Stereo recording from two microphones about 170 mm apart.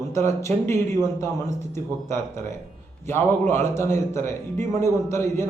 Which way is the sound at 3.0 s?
15° left (ahead or behind).